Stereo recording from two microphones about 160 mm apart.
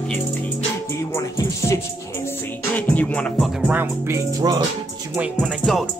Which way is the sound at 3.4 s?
Centre (ahead or behind).